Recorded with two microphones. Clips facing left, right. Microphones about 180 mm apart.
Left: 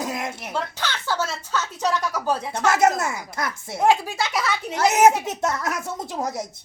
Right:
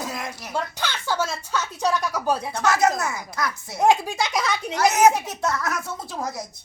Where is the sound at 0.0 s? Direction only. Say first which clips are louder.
Left 3 dB; 20° left (ahead or behind).